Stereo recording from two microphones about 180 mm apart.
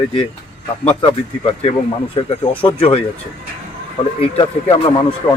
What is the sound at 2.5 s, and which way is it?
Speech, 30° left (ahead or behind).